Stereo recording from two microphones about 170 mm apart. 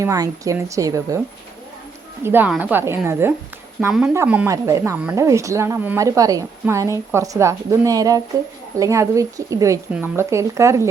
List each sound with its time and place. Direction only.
0.0 s speech: 20° right (ahead or behind)
2.2 s speech: 10° right (ahead or behind)